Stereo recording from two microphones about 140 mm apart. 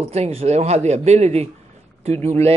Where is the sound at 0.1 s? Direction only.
45° right (ahead or behind).